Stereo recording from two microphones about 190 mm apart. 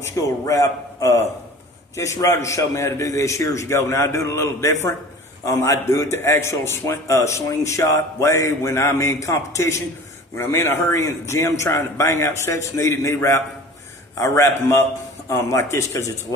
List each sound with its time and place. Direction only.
0.0 s a man's voice: 15° left (ahead or behind)